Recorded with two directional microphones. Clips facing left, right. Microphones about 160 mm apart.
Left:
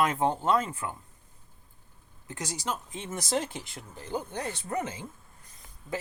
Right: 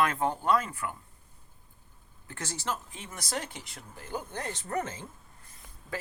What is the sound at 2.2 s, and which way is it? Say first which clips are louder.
Speech: left 1 dB; 15° left (ahead or behind).